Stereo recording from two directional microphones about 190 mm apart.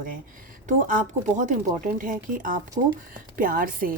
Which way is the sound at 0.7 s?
40° right (ahead or behind).